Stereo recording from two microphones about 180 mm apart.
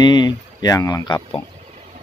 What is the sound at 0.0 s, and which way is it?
Speech, 25° left (ahead or behind).